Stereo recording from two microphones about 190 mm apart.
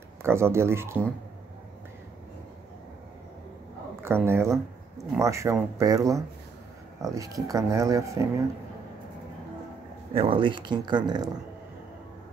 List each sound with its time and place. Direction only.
0.2 s speech: 15° right (ahead or behind)
4.0 s speech: 15° right (ahead or behind)
10.1 s speech: 30° right (ahead or behind)